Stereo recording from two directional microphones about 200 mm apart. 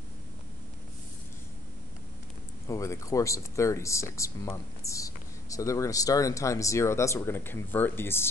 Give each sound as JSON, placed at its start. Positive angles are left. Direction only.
{"t": 2.7, "sound": "speech", "side_deg": 15}